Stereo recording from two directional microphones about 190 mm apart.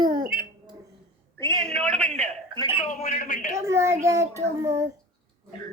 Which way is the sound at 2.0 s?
30° right (ahead or behind).